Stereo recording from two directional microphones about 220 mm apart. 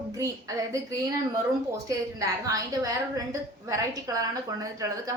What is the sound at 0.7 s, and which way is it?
A woman's voice, 15° right (ahead or behind).